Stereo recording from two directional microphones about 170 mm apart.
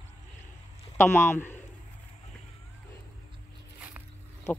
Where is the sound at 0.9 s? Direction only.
15° left (ahead or behind).